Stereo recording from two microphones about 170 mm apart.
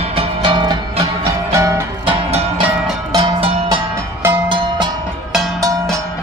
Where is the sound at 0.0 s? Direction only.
35° right (ahead or behind).